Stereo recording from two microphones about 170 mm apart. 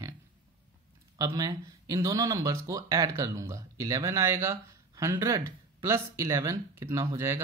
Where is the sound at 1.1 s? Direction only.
20° right (ahead or behind).